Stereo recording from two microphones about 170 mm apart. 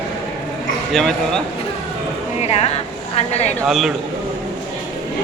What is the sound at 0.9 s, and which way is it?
Speech, 5° left (ahead or behind).